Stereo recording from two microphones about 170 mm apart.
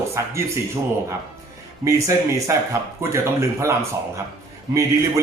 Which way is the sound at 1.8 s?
20° right (ahead or behind).